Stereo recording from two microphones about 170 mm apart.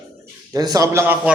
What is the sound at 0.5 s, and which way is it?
Speech, 20° right (ahead or behind).